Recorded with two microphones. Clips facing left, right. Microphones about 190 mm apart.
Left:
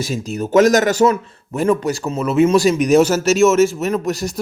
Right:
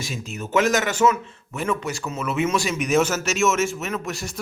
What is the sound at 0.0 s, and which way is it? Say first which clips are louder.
A man's voice: left 9 dB; 40° left (ahead or behind).